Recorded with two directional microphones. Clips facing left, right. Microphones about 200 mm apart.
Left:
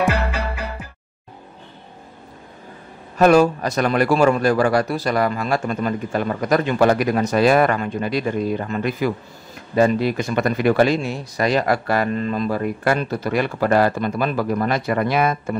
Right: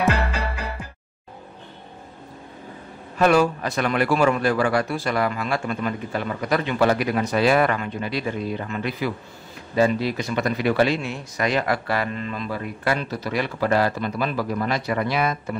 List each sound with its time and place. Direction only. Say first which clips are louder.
3.2 s a man's voice: left 4 dB; 40° left (ahead or behind)